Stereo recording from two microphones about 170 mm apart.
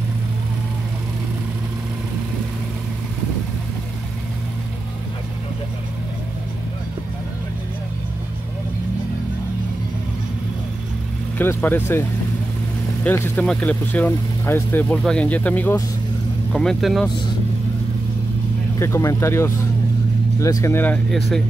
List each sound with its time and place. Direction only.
11.3 s speech: 10° left (ahead or behind)
13.0 s speech: 10° left (ahead or behind)
18.8 s speech: 15° left (ahead or behind)